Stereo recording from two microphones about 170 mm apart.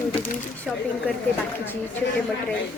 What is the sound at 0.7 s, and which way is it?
Speech, centre (ahead or behind).